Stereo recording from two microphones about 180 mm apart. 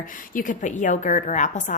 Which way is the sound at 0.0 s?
50° left (ahead or behind).